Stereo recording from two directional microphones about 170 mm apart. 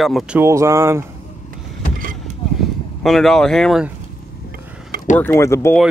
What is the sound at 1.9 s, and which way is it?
Vehicle, 55° right (ahead or behind).